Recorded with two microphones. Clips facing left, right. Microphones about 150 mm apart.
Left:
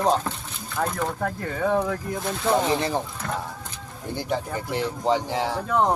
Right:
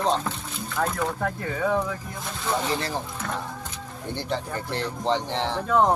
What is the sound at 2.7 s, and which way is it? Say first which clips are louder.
Speech: left 4 dB; 20° left (ahead or behind).